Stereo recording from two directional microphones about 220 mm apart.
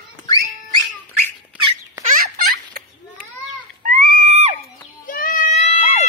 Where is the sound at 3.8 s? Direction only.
40° right (ahead or behind).